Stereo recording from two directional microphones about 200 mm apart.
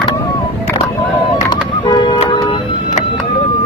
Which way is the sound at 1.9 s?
25° left (ahead or behind).